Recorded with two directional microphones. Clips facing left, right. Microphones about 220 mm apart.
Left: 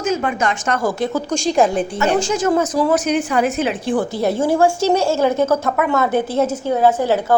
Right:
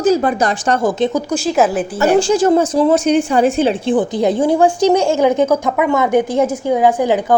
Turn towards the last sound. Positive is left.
turn(degrees=-15)  # may be behind; listen again after turning